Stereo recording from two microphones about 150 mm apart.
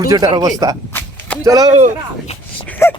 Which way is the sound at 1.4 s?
25° right (ahead or behind).